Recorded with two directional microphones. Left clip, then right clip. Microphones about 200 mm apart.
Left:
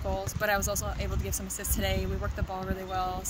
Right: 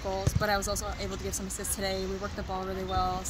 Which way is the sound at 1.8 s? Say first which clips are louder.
Even; 25° left (ahead or behind).